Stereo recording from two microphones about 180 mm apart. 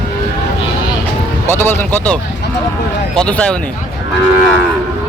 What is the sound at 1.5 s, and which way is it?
Speech, 15° left (ahead or behind).